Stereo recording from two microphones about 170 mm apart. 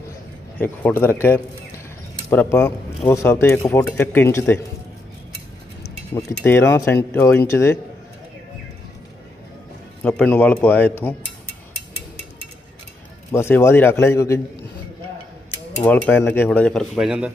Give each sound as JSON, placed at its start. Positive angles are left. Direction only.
{"t": 0.6, "sound": "speech", "side_deg": 10}
{"t": 2.2, "sound": "speech", "side_deg": 15}
{"t": 6.1, "sound": "speech", "side_deg": 15}
{"t": 10.0, "sound": "speech", "side_deg": 10}
{"t": 13.3, "sound": "speech", "side_deg": 15}
{"t": 15.8, "sound": "speech", "side_deg": 10}
{"t": 16.9, "sound": "speech", "side_deg": -5}